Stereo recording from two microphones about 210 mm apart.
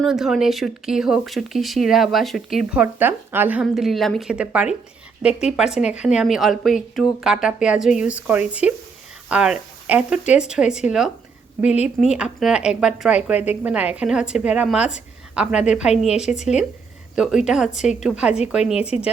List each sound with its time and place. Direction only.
0.0 s speech: centre (ahead or behind)